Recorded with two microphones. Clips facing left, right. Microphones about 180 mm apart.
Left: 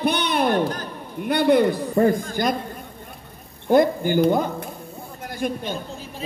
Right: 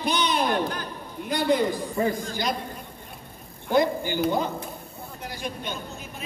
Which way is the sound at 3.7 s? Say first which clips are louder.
Left 5 dB; 50° left (ahead or behind).